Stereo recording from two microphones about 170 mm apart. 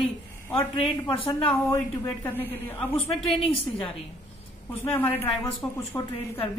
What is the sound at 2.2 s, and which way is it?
Speech, 10° left (ahead or behind).